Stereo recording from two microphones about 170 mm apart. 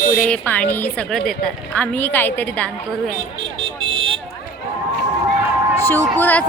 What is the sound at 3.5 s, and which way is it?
Vehicle, 30° right (ahead or behind).